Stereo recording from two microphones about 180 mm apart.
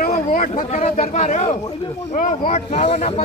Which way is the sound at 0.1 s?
45° left (ahead or behind).